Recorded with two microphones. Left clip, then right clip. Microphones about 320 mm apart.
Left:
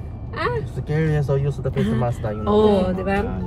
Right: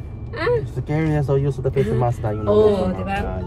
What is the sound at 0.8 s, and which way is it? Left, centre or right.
Speech, centre.